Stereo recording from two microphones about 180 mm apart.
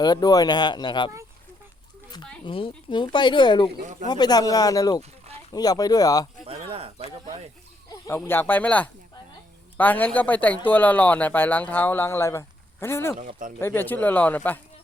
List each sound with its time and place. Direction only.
0.0 s speech: 20° left (ahead or behind)
2.4 s speech: 30° left (ahead or behind)
6.6 s snake: 30° right (ahead or behind)
7.9 s speech: 20° left (ahead or behind)
13.1 s speech: 50° right (ahead or behind)
13.6 s speech: 10° left (ahead or behind)